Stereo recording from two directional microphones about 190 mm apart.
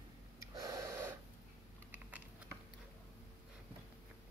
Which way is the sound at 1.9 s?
10° right (ahead or behind).